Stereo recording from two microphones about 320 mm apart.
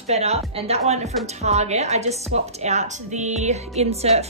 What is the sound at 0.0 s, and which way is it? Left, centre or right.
A woman's voice, centre.